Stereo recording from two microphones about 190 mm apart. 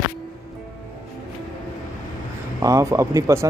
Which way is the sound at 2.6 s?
15° right (ahead or behind).